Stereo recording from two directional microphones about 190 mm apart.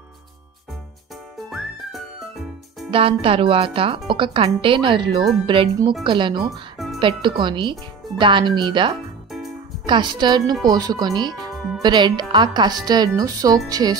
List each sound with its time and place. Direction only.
1.5 s whistle: centre (ahead or behind)
2.9 s speech: 30° right (ahead or behind)